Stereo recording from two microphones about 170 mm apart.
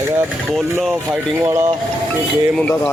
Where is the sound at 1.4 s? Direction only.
15° right (ahead or behind).